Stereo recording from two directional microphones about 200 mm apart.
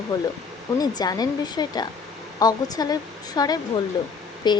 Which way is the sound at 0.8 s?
20° left (ahead or behind).